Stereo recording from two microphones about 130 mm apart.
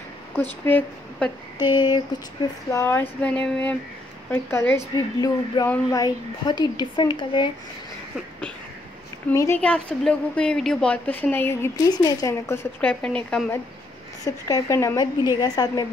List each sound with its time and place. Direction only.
0.7 s a woman's voice: 15° left (ahead or behind)
1.7 s speech: 35° left (ahead or behind)
2.7 s a woman's voice: 20° left (ahead or behind)
4.9 s a woman's voice: 25° left (ahead or behind)
9.3 s a woman's voice: 25° left (ahead or behind)
9.6 s a woman's voice: 10° left (ahead or behind)
11.7 s a woman's voice: 30° left (ahead or behind)
13.0 s a woman's voice: 10° left (ahead or behind)
14.2 s a woman's voice: 25° left (ahead or behind)